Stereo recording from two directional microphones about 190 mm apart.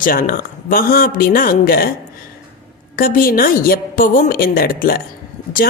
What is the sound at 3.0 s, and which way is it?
A woman's voice, 50° left (ahead or behind).